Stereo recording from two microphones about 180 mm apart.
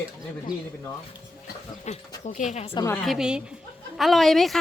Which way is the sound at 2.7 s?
15° left (ahead or behind).